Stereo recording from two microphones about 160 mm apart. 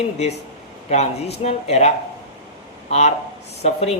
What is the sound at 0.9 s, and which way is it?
Speech, 40° left (ahead or behind).